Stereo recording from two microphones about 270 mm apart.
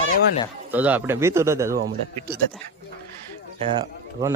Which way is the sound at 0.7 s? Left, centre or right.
Centre.